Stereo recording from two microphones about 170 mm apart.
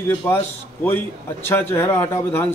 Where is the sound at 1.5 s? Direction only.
15° left (ahead or behind).